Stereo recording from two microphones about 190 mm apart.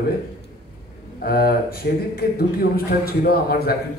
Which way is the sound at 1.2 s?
50° left (ahead or behind).